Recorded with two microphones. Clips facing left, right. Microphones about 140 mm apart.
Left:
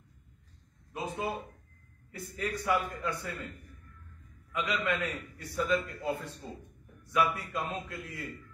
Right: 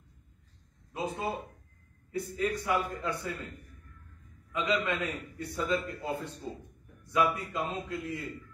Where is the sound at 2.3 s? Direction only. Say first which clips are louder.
Even; 20° right (ahead or behind).